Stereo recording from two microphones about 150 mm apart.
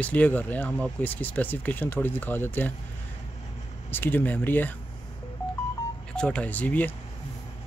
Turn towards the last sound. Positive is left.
turn(degrees=10)  # may be behind; listen again after turning